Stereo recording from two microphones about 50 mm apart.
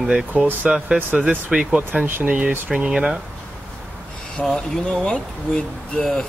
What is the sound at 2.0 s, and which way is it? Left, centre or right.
Speech, right.